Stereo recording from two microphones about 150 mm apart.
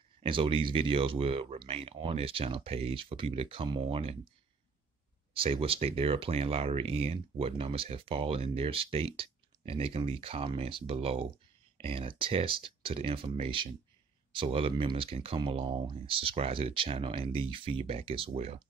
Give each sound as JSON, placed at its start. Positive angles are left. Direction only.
{"t": 0.2, "sound": "speech", "side_deg": -35}
{"t": 5.3, "sound": "speech", "side_deg": -40}